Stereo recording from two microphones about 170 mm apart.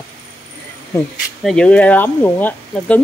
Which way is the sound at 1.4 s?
5° left (ahead or behind).